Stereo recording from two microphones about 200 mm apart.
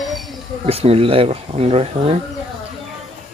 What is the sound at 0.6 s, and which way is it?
Speech, 30° right (ahead or behind).